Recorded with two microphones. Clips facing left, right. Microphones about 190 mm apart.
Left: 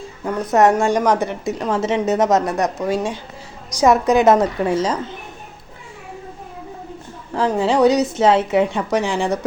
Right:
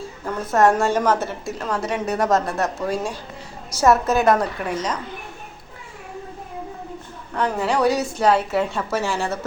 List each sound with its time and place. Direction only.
0.5 s a woman's voice: 15° left (ahead or behind)
7.3 s a woman's voice: 25° left (ahead or behind)